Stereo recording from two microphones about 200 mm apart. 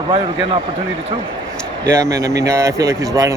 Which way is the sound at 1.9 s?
15° right (ahead or behind).